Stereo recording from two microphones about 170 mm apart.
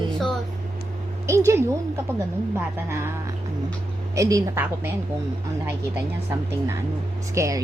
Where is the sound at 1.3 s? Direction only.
15° right (ahead or behind).